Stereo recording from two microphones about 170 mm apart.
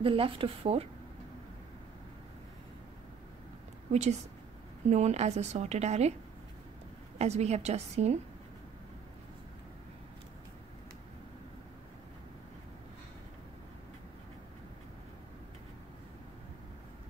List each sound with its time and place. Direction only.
0.0 s a woman's voice: 30° right (ahead or behind)
3.9 s a woman's voice: 40° right (ahead or behind)
7.2 s a woman's voice: 40° right (ahead or behind)